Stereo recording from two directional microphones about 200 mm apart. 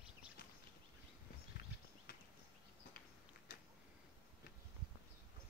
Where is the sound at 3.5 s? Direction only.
45° left (ahead or behind).